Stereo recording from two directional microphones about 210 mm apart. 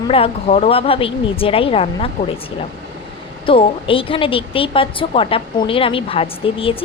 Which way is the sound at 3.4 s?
25° left (ahead or behind).